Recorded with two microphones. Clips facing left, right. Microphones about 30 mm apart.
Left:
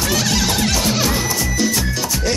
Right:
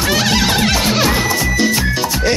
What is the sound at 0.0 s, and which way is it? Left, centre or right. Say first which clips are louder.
Music: right 4 dB; right.